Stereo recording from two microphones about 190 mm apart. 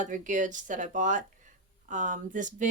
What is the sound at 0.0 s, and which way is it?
Speech, 40° right (ahead or behind).